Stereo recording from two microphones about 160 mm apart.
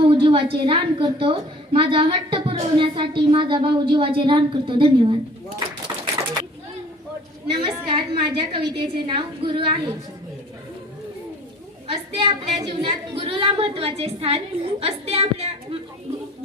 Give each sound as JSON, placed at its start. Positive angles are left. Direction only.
{"t": 0.0, "sound": "a woman's voice", "side_deg": -30}
{"t": 7.5, "sound": "a woman's voice", "side_deg": -35}
{"t": 11.9, "sound": "a woman's voice", "side_deg": -35}